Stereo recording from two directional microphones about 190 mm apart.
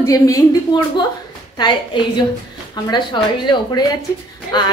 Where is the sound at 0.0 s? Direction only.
15° left (ahead or behind).